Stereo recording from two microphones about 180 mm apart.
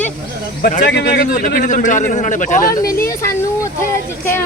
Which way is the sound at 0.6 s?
50° left (ahead or behind).